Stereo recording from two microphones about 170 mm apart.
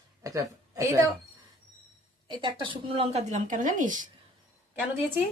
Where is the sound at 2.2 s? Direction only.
30° right (ahead or behind); by 3.9 s 50° right (ahead or behind).